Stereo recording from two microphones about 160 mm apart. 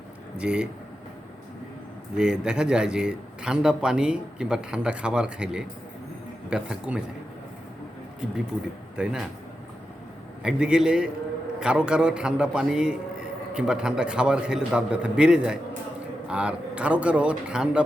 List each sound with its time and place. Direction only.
0.3 s a man's voice: 5° right (ahead or behind)
2.1 s a man's voice: 5° right (ahead or behind)
9.0 s a man's voice: 5° right (ahead or behind)
10.4 s a man's voice: 5° right (ahead or behind)